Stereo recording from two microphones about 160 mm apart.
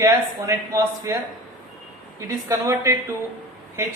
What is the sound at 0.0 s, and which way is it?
Speech, 15° right (ahead or behind).